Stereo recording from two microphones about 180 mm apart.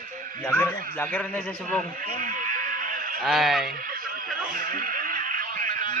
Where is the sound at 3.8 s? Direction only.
55° right (ahead or behind).